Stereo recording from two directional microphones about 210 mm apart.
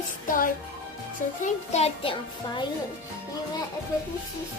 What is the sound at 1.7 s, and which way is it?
Music, 30° left (ahead or behind).